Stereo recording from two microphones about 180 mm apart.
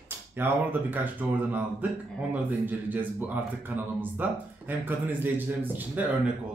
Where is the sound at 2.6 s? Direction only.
10° right (ahead or behind).